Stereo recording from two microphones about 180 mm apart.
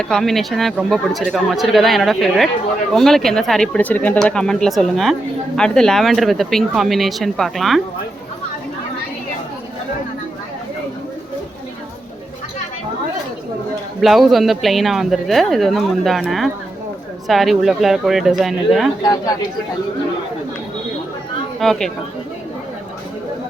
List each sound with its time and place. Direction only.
0.0 s speech: centre (ahead or behind)
14.0 s speech: centre (ahead or behind)
21.6 s speech: centre (ahead or behind)